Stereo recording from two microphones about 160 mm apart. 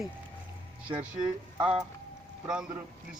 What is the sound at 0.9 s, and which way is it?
Speech, 10° right (ahead or behind).